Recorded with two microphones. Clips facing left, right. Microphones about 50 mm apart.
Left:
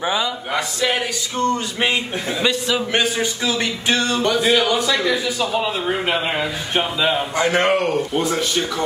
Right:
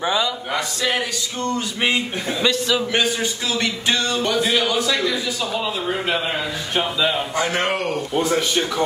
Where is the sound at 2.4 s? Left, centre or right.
Centre.